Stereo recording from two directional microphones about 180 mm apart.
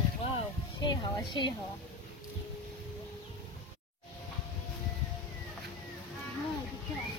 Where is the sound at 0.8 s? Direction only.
25° left (ahead or behind).